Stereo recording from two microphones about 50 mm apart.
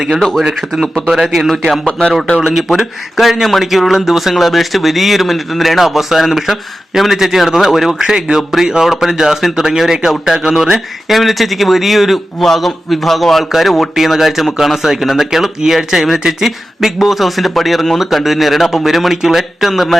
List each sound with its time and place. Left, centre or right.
0.2 s speech: centre
1.9 s a man's voice: centre
2.4 s speech: centre